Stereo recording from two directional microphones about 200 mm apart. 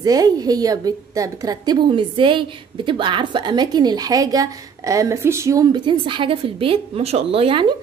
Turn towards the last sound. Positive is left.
turn(degrees=-25)  # may be behind; listen again after turning